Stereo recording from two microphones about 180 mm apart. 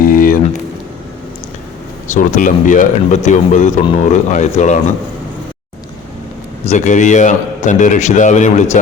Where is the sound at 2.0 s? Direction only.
45° left (ahead or behind).